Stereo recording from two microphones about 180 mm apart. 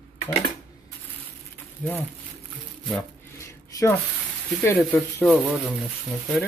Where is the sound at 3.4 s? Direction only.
15° left (ahead or behind).